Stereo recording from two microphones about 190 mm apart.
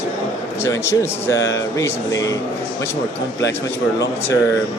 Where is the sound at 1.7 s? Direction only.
15° left (ahead or behind).